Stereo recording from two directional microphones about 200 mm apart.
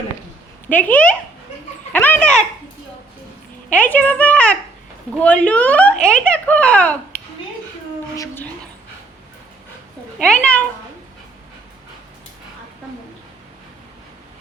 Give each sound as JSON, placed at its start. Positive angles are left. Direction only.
{"t": 0.7, "sound": "speech", "side_deg": 10}
{"t": 1.9, "sound": "dog", "side_deg": 10}
{"t": 3.7, "sound": "speech", "side_deg": 10}
{"t": 8.1, "sound": "speech", "side_deg": 15}
{"t": 10.2, "sound": "speech", "side_deg": 5}